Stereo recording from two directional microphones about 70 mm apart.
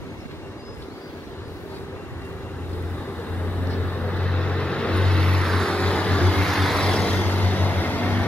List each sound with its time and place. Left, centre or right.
3.3 s vehicle: left